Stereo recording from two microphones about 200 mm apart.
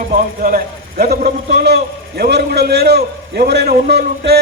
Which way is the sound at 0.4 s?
50° right (ahead or behind).